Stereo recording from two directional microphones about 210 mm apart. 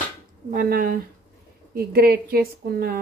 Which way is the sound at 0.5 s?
40° right (ahead or behind).